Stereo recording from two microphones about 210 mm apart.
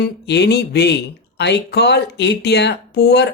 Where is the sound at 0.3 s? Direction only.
55° left (ahead or behind).